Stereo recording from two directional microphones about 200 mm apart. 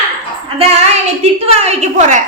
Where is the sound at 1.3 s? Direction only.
30° right (ahead or behind).